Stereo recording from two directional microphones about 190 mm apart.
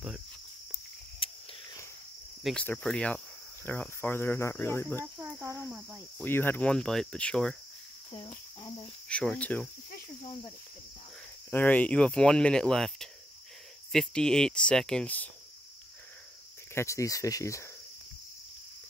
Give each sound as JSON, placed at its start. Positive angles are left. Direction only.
{"t": 1.2, "sound": "a sound", "side_deg": 20}
{"t": 2.4, "sound": "speech", "side_deg": 5}
{"t": 3.6, "sound": "cricket", "side_deg": 10}
{"t": 5.0, "sound": "speech", "side_deg": -10}
{"t": 6.2, "sound": "speech", "side_deg": 10}
{"t": 9.1, "sound": "speech", "side_deg": 5}
{"t": 11.5, "sound": "speech", "side_deg": 10}
{"t": 16.7, "sound": "cricket", "side_deg": 15}